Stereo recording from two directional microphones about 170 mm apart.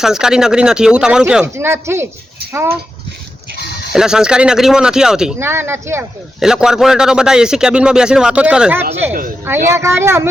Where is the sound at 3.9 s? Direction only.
5° right (ahead or behind).